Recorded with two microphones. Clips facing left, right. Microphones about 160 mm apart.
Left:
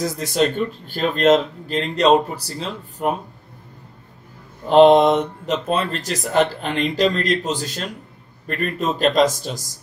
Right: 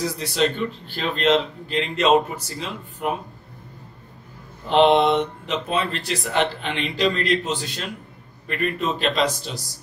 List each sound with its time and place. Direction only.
0.0 s speech: 45° left (ahead or behind)
4.6 s speech: 40° left (ahead or behind)